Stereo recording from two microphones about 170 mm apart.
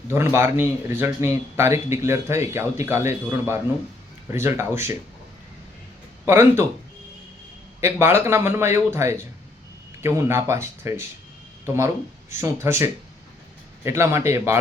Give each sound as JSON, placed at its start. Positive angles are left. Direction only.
{"t": 0.1, "sound": "speech", "side_deg": -15}
{"t": 6.2, "sound": "speech", "side_deg": -15}
{"t": 7.8, "sound": "speech", "side_deg": -15}
{"t": 12.3, "sound": "speech", "side_deg": -15}